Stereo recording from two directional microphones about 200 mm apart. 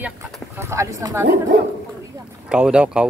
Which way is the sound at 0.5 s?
15° right (ahead or behind).